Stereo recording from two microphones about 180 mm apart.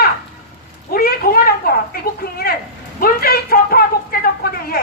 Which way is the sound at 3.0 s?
55° left (ahead or behind).